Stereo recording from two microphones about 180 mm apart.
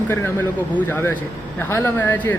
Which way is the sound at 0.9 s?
10° left (ahead or behind).